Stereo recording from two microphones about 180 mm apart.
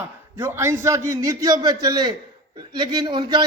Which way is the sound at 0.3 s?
15° right (ahead or behind).